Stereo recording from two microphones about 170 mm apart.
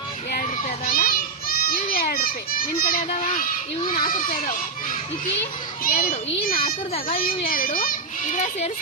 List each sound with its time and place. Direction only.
0.3 s children playing: 55° left (ahead or behind)
3.8 s a child's voice: 55° left (ahead or behind)